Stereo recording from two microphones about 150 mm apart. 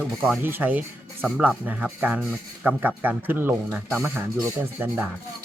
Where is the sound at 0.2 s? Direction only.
15° right (ahead or behind).